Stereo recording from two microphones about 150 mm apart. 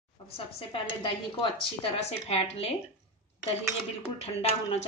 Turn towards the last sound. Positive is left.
turn(degrees=45)  # may be behind; listen again after turning